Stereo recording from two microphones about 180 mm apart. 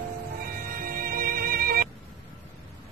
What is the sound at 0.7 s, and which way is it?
Music, 55° right (ahead or behind).